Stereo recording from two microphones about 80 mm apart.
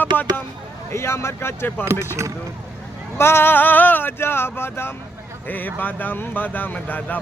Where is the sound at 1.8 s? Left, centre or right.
Right.